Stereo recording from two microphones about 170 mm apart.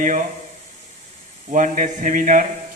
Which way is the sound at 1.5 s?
50° right (ahead or behind).